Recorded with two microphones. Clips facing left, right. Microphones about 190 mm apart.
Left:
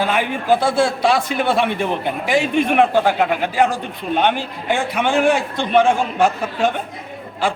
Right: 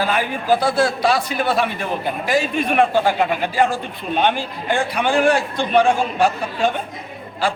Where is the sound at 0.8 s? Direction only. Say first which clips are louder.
Left 1 dB; centre (ahead or behind).